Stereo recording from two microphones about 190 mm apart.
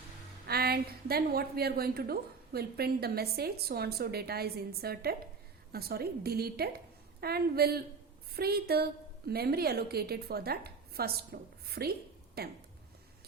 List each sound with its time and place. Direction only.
0.4 s a woman's voice: 55° right (ahead or behind)